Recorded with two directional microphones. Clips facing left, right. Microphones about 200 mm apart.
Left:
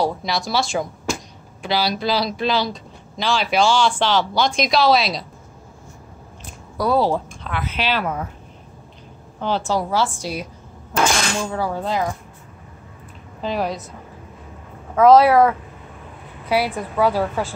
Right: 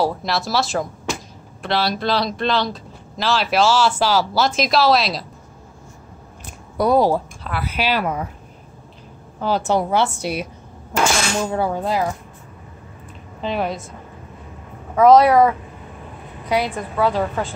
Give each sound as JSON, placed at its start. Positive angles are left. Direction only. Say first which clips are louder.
{"t": 0.0, "sound": "speech", "louder": "right 1 dB", "side_deg": 0}
{"t": 6.8, "sound": "a woman's voice", "louder": "right 3 dB", "side_deg": -15}
{"t": 9.7, "sound": "a woman's voice", "louder": "right 3 dB", "side_deg": -20}
{"t": 13.4, "sound": "speech", "louder": "even", "side_deg": 0}
{"t": 15.0, "sound": "a woman's voice", "louder": "even", "side_deg": 0}